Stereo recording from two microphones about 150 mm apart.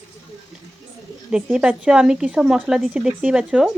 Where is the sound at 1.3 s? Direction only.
5° right (ahead or behind).